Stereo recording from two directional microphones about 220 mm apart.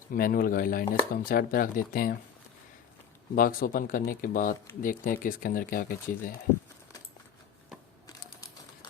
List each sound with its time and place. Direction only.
0.1 s speech: 40° left (ahead or behind)
3.3 s speech: 40° left (ahead or behind)
8.0 s a sound: 15° left (ahead or behind)